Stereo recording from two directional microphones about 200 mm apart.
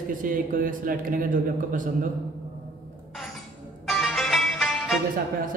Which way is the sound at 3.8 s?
Centre (ahead or behind).